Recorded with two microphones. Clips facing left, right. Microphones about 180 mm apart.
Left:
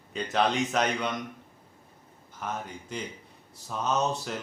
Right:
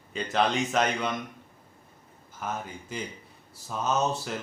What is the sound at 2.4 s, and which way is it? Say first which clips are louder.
Speech: right 1 dB; 5° right (ahead or behind).